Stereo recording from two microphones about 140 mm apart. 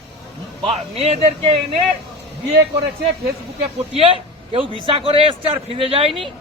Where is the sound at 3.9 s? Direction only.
40° right (ahead or behind).